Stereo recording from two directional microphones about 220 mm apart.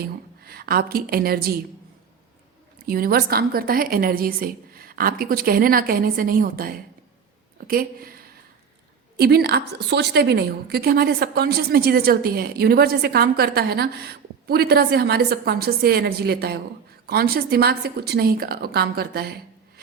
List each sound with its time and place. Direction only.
0.4 s a woman's voice: 45° right (ahead or behind)
2.8 s a woman's voice: 40° right (ahead or behind)